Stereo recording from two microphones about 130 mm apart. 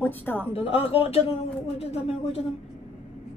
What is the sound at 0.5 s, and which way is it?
A man's voice, 45° left (ahead or behind).